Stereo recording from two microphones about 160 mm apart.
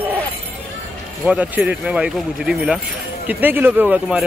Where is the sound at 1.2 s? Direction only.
10° right (ahead or behind).